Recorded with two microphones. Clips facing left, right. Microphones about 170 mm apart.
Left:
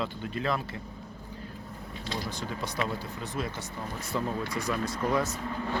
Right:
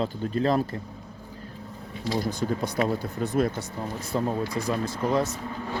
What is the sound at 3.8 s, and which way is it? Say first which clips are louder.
Speech: right 4 dB; 30° right (ahead or behind).